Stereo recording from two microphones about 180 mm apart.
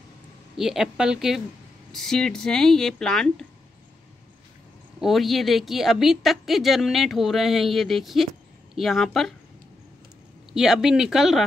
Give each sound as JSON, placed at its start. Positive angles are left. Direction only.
{"t": 0.6, "sound": "a woman's voice", "side_deg": 0}
{"t": 5.0, "sound": "a woman's voice", "side_deg": 0}
{"t": 10.5, "sound": "a woman's voice", "side_deg": 0}